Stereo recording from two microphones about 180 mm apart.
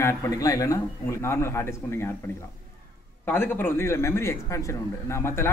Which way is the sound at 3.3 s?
10° left (ahead or behind).